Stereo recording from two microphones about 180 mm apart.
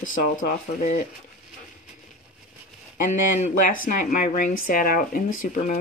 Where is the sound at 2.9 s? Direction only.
45° left (ahead or behind).